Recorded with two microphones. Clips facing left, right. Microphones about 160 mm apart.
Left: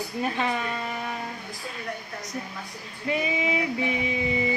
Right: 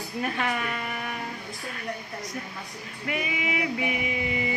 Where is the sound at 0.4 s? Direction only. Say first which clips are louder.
Left 1 dB; 25° left (ahead or behind).